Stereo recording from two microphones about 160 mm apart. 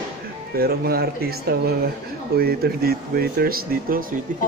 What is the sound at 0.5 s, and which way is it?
Speech, 70° right (ahead or behind).